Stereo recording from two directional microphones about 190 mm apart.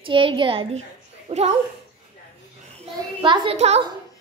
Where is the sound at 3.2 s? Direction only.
25° right (ahead or behind).